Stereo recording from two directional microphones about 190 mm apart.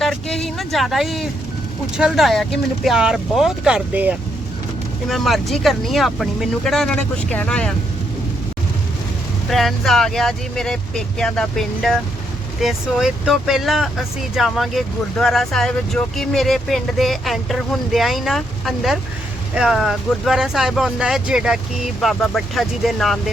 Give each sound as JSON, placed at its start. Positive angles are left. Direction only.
{"t": 0.0, "sound": "a sound", "side_deg": 0}
{"t": 2.0, "sound": "speech", "side_deg": 0}
{"t": 9.5, "sound": "speech", "side_deg": 0}